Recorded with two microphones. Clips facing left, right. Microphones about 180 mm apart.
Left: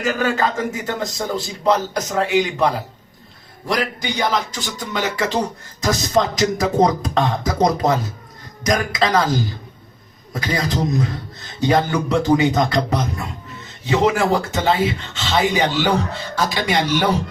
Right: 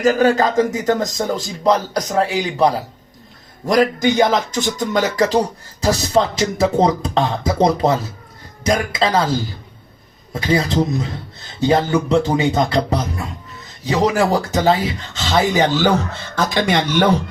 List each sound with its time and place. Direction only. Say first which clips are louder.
0.0 s a man's voice: right 6 dB; 40° right (ahead or behind)
3.7 s speech: right 8 dB; 45° right (ahead or behind); by 9.3 s 30° right (ahead or behind)
10.4 s a man's voice: right 4 dB; 25° right (ahead or behind); by 16.8 s 50° right (ahead or behind)